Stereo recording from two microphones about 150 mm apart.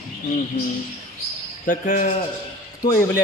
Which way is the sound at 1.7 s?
60° left (ahead or behind).